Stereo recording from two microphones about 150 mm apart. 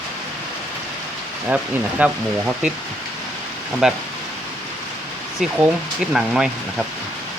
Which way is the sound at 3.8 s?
5° right (ahead or behind).